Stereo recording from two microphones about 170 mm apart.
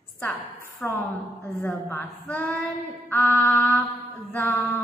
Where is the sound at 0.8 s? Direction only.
10° left (ahead or behind).